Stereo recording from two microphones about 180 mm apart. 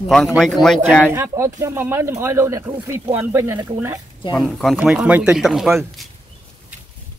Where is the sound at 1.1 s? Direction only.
15° right (ahead or behind).